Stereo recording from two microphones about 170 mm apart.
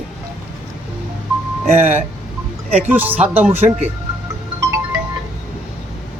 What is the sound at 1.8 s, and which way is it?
Speech, 10° right (ahead or behind).